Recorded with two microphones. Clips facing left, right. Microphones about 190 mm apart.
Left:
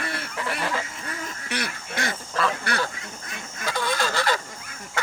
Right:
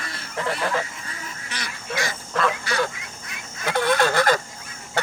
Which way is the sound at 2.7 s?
60° left (ahead or behind).